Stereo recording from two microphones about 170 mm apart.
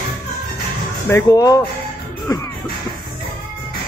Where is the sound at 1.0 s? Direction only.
20° left (ahead or behind).